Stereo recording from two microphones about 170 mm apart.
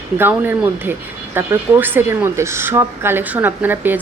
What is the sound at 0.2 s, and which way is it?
Speech, 10° right (ahead or behind).